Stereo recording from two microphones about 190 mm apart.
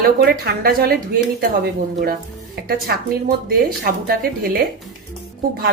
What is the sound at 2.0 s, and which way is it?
Speech, 55° right (ahead or behind).